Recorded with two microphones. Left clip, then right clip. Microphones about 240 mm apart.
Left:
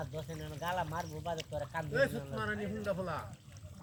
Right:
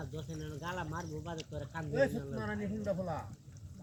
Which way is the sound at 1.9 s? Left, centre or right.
Centre.